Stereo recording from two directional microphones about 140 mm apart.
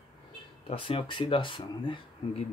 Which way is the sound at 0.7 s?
40° left (ahead or behind).